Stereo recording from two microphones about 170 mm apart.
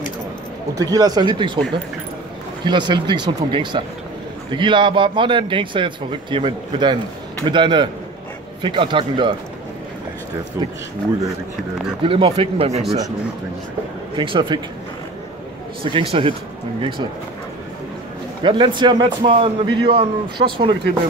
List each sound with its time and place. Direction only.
0.7 s a man's voice: 20° right (ahead or behind)
2.6 s a man's voice: 25° right (ahead or behind)
12.0 s speech: 35° right (ahead or behind)
14.1 s a man's voice: 30° right (ahead or behind)
15.8 s speech: 35° right (ahead or behind)
18.4 s a man's voice: 30° right (ahead or behind)